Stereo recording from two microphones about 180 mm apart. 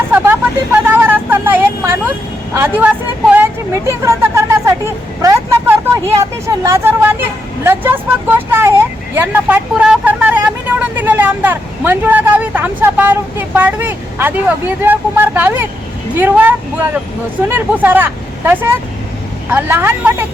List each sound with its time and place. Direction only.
0.1 s vehicle: 10° right (ahead or behind)
3.8 s a sound: 15° right (ahead or behind)
5.2 s vehicle: 15° right (ahead or behind)
6.1 s speech: 15° right (ahead or behind)
9.1 s vehicle: 10° right (ahead or behind)
16.1 s speech: 10° right (ahead or behind)